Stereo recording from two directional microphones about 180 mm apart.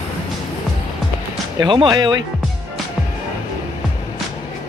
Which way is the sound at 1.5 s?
25° right (ahead or behind).